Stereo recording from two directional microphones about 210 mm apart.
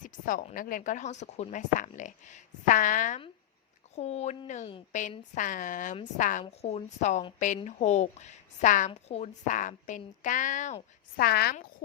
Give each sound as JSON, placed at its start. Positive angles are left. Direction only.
{"t": 0.0, "sound": "a woman's voice", "side_deg": 40}
{"t": 11.3, "sound": "speech", "side_deg": 50}